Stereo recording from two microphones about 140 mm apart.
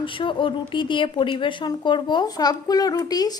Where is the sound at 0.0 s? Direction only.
35° left (ahead or behind).